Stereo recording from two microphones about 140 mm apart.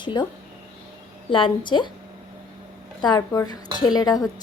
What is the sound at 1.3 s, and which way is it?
Speech, 35° left (ahead or behind).